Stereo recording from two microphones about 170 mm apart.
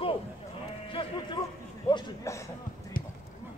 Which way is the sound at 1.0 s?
30° left (ahead or behind).